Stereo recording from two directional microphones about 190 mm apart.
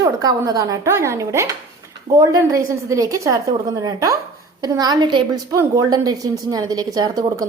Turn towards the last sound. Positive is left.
turn(degrees=-20)  # may be behind; listen again after turning